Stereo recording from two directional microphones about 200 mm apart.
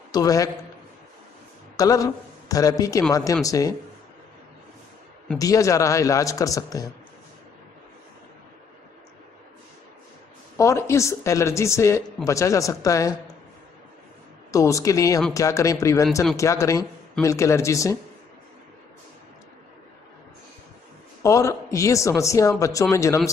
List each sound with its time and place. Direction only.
0.1 s a man's voice: 15° left (ahead or behind)
1.8 s a man's voice: 15° left (ahead or behind)
5.4 s a man's voice: 15° left (ahead or behind)
10.6 s a man's voice: 15° left (ahead or behind)
14.5 s a man's voice: 15° left (ahead or behind)
21.2 s a man's voice: 15° left (ahead or behind)